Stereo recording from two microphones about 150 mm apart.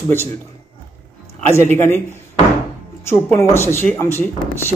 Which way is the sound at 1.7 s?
15° left (ahead or behind).